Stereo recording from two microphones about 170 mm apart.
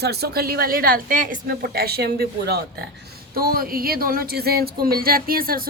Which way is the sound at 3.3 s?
60° right (ahead or behind).